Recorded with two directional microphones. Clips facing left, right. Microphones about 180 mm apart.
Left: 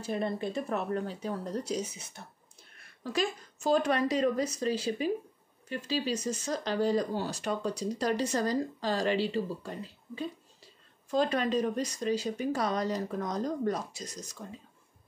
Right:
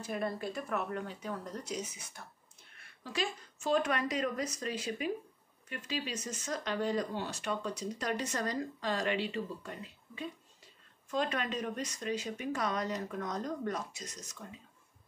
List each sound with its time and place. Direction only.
0.0 s speech: 25° left (ahead or behind)
3.0 s speech: 40° left (ahead or behind)